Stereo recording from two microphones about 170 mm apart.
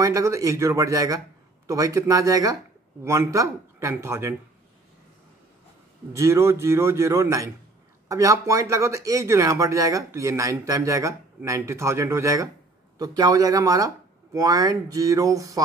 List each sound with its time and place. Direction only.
0.0 s a man's voice: 20° right (ahead or behind)
6.1 s a man's voice: 15° right (ahead or behind)